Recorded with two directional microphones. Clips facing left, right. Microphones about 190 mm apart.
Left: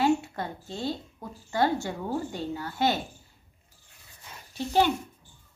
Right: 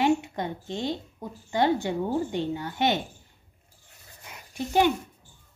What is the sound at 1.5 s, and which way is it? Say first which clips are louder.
A woman's voice: right 2 dB; 20° right (ahead or behind).